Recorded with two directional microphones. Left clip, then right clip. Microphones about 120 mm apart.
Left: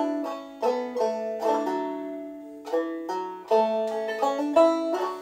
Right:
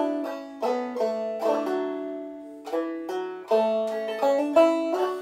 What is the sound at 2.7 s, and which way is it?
Music, 25° right (ahead or behind).